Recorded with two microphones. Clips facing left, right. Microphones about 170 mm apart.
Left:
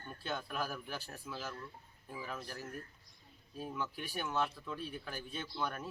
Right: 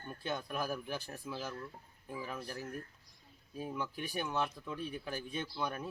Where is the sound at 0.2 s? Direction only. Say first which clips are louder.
Right 1 dB; 15° right (ahead or behind).